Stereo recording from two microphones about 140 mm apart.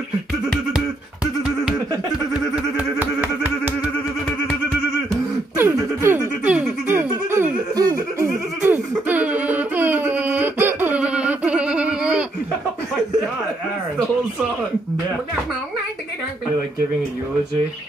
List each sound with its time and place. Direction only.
0.5 s a sound: 5° right (ahead or behind)
5.6 s music: 15° right (ahead or behind)
7.2 s giggle: 20° right (ahead or behind)